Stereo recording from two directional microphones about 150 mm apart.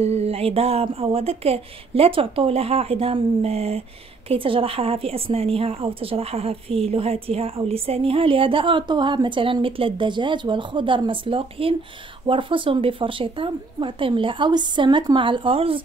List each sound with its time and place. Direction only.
0.0 s a woman's voice: 45° right (ahead or behind)